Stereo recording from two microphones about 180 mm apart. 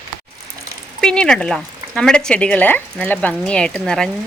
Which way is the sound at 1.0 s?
5° left (ahead or behind).